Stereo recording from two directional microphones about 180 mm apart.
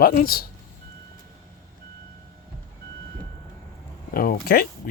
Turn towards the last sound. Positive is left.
turn(degrees=55)  # may be behind; listen again after turning